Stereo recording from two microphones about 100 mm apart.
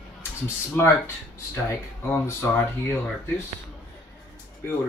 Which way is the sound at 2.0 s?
25° left (ahead or behind).